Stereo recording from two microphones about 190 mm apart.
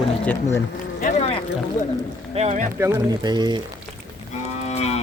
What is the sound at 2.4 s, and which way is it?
Speech, 35° right (ahead or behind).